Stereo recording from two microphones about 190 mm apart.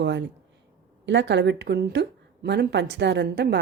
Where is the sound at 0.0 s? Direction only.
65° right (ahead or behind).